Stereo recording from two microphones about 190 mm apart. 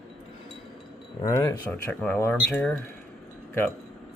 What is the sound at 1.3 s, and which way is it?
Speech, 15° left (ahead or behind).